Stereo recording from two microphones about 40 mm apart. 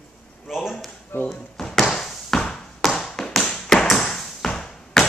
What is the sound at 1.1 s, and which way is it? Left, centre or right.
Speech, left.